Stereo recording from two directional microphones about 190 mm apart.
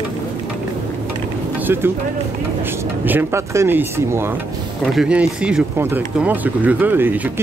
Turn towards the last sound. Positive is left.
turn(degrees=-10)  # may be behind; listen again after turning